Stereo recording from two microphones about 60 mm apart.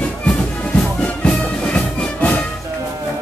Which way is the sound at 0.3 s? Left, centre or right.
Left.